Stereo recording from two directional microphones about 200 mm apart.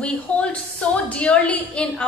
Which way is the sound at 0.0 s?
5° left (ahead or behind).